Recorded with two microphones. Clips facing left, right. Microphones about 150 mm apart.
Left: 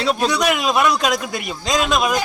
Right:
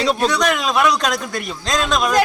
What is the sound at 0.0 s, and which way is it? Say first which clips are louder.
A man's voice: right 1 dB; centre (ahead or behind).